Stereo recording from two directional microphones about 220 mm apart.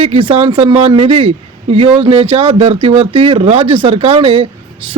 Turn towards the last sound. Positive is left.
turn(degrees=-25)  # may be behind; listen again after turning